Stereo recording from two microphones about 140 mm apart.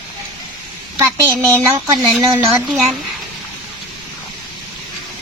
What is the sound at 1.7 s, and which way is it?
Speech, 20° right (ahead or behind).